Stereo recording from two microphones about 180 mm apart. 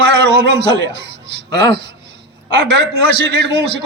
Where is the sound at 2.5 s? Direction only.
75° right (ahead or behind).